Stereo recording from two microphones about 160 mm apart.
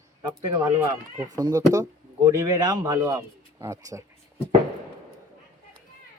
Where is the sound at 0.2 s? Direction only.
25° right (ahead or behind).